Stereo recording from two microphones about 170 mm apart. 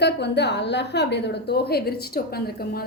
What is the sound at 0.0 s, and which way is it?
A woman's voice, 80° left.